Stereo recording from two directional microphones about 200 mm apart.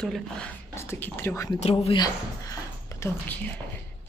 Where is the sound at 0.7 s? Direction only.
15° left (ahead or behind).